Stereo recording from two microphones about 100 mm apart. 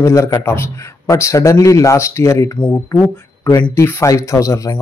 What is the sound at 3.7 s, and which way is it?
Speech, 30° left (ahead or behind).